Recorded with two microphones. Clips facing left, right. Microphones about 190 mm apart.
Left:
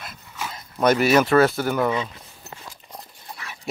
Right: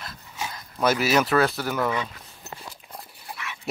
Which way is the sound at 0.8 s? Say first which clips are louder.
Left 4 dB; centre (ahead or behind).